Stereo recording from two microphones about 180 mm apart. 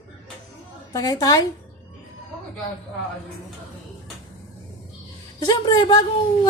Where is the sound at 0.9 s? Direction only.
20° left (ahead or behind).